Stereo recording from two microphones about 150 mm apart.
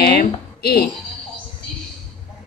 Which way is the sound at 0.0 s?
90° left.